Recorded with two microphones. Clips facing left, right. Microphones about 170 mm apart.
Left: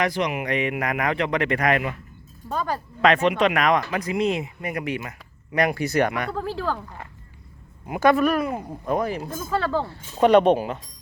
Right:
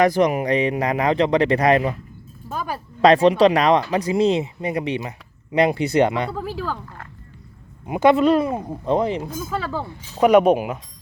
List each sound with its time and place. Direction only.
0.0 s speech: 45° right (ahead or behind)
2.5 s speech: 5° right (ahead or behind)
3.0 s speech: 35° right (ahead or behind)
6.3 s speech: 5° right (ahead or behind)
6.8 s speech: 15° left (ahead or behind)
7.9 s speech: 20° right (ahead or behind)
9.4 s speech: 5° right (ahead or behind)